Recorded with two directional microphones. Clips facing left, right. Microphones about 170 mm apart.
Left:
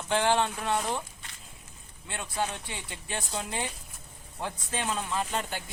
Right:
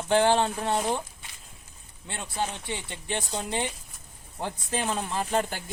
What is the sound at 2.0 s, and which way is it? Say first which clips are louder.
Speech: right 1 dB; 30° right (ahead or behind).